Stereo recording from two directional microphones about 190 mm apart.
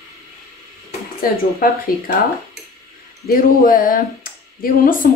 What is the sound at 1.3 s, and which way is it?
Speech, 50° left (ahead or behind).